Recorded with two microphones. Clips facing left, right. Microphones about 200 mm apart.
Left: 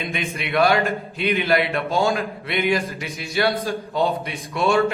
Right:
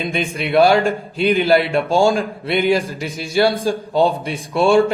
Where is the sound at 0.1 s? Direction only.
30° right (ahead or behind).